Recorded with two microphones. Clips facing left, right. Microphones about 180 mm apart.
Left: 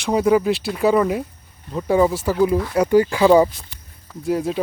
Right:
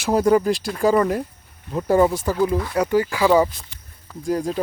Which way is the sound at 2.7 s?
20° left (ahead or behind).